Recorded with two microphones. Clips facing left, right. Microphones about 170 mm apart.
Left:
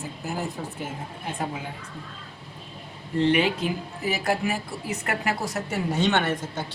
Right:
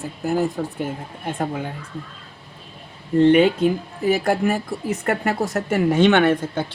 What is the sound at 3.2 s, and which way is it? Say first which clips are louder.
Speech: right 8 dB; 50° right (ahead or behind).